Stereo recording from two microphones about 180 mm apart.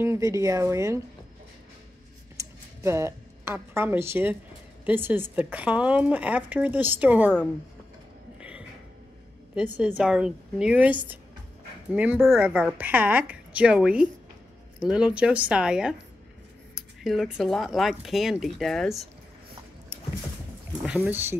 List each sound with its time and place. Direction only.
0.0 s speech: 15° right (ahead or behind)
2.3 s music: 15° right (ahead or behind)
4.8 s speech: 10° right (ahead or behind)
8.4 s a sound: 5° right (ahead or behind)
9.8 s speech: 5° right (ahead or behind)
20.8 s speech: 10° right (ahead or behind)